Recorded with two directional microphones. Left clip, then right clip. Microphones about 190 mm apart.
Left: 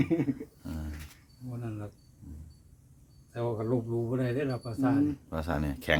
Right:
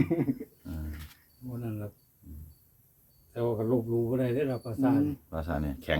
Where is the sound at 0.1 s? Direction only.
10° right (ahead or behind).